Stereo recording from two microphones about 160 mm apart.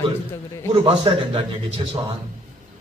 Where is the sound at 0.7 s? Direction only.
30° right (ahead or behind).